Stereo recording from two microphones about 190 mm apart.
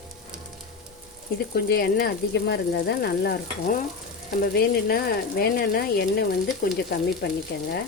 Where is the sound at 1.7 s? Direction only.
55° left (ahead or behind).